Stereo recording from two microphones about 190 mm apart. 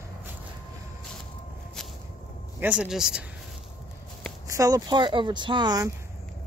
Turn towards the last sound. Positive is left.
turn(degrees=-20)  # may be behind; listen again after turning